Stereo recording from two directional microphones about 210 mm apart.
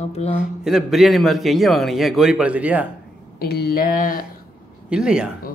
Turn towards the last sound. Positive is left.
turn(degrees=-5)  # may be behind; listen again after turning